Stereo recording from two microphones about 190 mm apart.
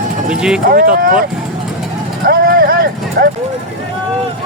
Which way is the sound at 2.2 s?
50° right (ahead or behind).